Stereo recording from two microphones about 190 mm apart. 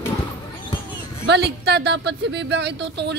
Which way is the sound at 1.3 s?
60° right (ahead or behind).